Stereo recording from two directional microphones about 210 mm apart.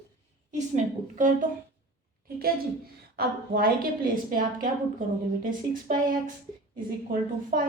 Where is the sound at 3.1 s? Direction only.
45° right (ahead or behind).